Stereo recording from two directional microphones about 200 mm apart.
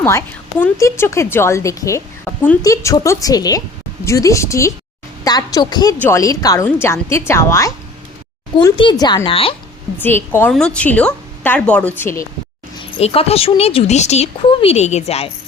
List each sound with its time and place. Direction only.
0.0 s a woman's voice: 10° left (ahead or behind)
8.5 s speech: 25° left (ahead or behind)
10.0 s a woman's voice: 10° left (ahead or behind)
13.0 s speech: 30° left (ahead or behind)